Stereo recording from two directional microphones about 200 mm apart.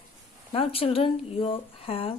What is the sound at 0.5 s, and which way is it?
Speech, 30° left (ahead or behind).